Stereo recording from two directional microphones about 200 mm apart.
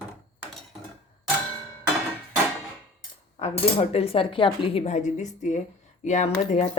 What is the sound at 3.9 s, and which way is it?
A woman's voice, 30° left (ahead or behind).